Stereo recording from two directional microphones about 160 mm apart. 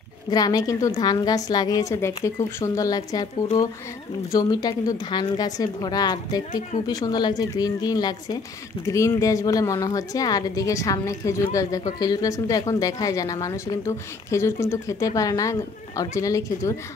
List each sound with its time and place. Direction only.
0.3 s a woman's voice: 25° left (ahead or behind)
4.3 s a woman's voice: 25° left (ahead or behind)